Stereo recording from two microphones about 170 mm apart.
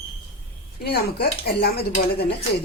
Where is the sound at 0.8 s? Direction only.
70° left (ahead or behind).